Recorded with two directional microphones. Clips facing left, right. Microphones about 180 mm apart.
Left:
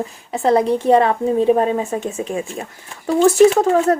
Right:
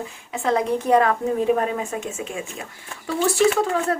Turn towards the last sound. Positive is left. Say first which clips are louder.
# left 7 dB
turn(degrees=45)  # may be behind; listen again after turning